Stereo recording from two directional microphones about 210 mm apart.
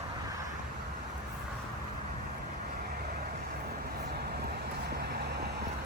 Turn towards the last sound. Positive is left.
turn(degrees=-50)  # may be behind; listen again after turning